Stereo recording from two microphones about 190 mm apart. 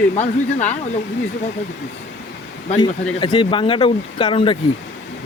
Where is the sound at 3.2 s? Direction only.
25° left (ahead or behind).